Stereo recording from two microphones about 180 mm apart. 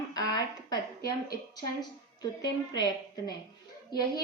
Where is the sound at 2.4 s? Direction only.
20° left (ahead or behind).